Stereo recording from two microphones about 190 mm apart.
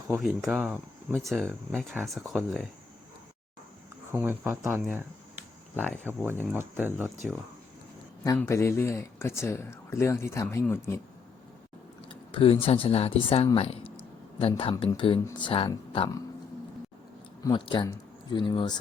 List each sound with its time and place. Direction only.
0.1 s speech: centre (ahead or behind)
4.1 s speech: 10° right (ahead or behind)
8.4 s speech: 15° left (ahead or behind)
12.0 s speech: 30° left (ahead or behind)
17.4 s speech: 25° left (ahead or behind)